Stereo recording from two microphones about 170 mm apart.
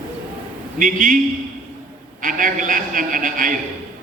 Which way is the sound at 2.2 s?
50° right (ahead or behind).